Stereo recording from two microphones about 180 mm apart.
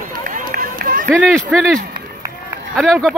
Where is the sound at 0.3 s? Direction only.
50° right (ahead or behind).